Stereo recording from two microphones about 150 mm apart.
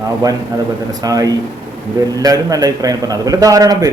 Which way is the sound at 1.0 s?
25° right (ahead or behind).